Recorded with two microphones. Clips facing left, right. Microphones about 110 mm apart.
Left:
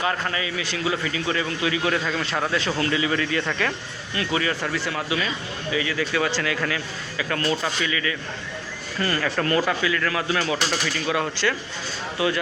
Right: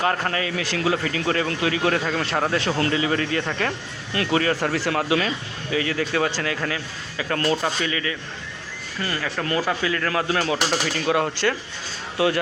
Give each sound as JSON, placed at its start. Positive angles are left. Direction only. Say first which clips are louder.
{"t": 0.0, "sound": "a man's voice", "louder": "right 2 dB", "side_deg": -50}
{"t": 4.8, "sound": "speech", "louder": "right 4 dB", "side_deg": -65}
{"t": 9.0, "sound": "speech", "louder": "left 3 dB", "side_deg": -10}
{"t": 9.8, "sound": "speech", "louder": "right 1 dB", "side_deg": -35}
{"t": 10.5, "sound": "speech", "louder": "right 2 dB", "side_deg": -15}
{"t": 11.0, "sound": "speech", "louder": "right 4 dB", "side_deg": -35}